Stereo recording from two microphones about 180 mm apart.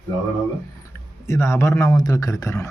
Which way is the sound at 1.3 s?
15° left (ahead or behind).